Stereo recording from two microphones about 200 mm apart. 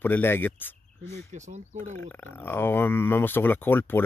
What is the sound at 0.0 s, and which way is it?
Speech, 10° left (ahead or behind).